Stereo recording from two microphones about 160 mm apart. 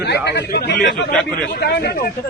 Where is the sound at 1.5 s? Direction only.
85° left.